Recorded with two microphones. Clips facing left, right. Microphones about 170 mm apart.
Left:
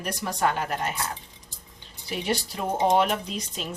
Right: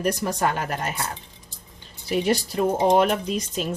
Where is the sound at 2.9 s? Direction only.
45° right (ahead or behind).